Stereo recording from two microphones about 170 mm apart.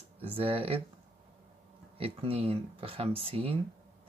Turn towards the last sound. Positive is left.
turn(degrees=-35)  # may be behind; listen again after turning